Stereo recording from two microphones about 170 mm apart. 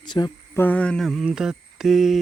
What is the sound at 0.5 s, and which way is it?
Mantra, 10° left (ahead or behind).